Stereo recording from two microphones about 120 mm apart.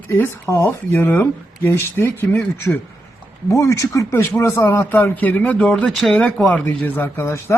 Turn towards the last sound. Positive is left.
turn(degrees=25)  # may be behind; listen again after turning